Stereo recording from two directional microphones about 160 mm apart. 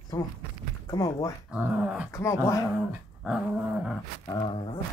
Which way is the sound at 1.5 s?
5° right (ahead or behind).